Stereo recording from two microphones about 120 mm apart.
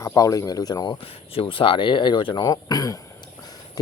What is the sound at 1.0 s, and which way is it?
Speech, 50° left (ahead or behind).